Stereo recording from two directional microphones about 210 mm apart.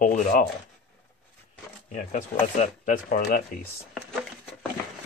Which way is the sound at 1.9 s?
35° left (ahead or behind).